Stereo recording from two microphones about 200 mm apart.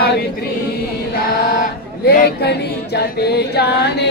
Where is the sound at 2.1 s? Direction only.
50° left (ahead or behind).